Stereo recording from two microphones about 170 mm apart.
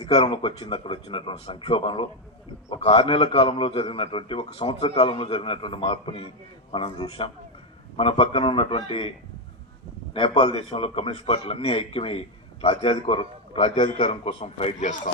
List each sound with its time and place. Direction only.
0.1 s a man's voice: 30° left (ahead or behind)
10.2 s a man's voice: 35° left (ahead or behind)